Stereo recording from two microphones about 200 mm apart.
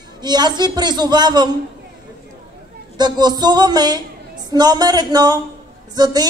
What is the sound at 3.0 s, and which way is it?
Speech, 20° right (ahead or behind).